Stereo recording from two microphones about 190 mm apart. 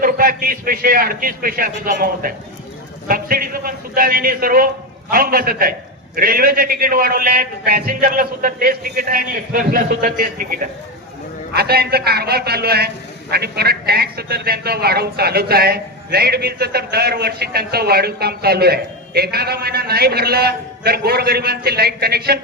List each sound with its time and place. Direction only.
0.0 s a man's voice: 50° right (ahead or behind)
11.5 s a man's voice: 55° right (ahead or behind)